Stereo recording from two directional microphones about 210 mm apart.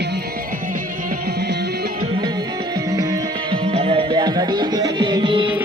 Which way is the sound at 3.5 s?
25° right (ahead or behind).